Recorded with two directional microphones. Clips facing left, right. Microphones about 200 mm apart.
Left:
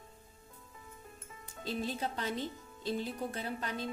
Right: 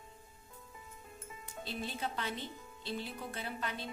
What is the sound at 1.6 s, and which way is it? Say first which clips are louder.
Music: left 4 dB; 40° left (ahead or behind).